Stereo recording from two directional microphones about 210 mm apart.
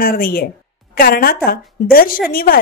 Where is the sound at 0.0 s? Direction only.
45° left (ahead or behind).